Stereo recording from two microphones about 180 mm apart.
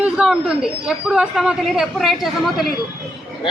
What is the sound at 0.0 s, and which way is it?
Speech, 5° right (ahead or behind).